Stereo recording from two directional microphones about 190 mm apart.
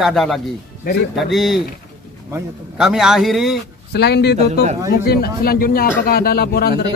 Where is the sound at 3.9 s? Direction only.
60° left (ahead or behind).